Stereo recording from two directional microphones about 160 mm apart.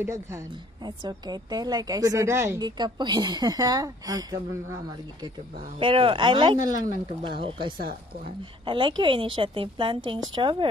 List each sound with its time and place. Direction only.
0.0 s a woman's voice: 15° right (ahead or behind)
0.8 s a woman's voice: 25° right (ahead or behind)
5.8 s a woman's voice: 35° right (ahead or behind)